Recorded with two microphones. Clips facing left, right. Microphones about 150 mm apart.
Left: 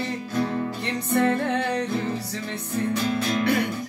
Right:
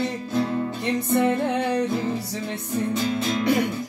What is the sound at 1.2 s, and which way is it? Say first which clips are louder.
Music: left 2 dB; 15° right (ahead or behind).